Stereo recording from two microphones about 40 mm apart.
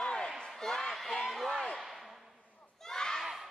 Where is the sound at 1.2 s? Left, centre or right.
Centre.